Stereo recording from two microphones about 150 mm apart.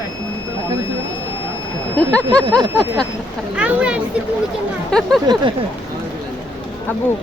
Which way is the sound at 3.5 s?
5° right (ahead or behind).